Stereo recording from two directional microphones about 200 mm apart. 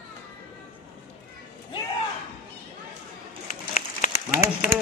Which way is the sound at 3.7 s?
35° left (ahead or behind).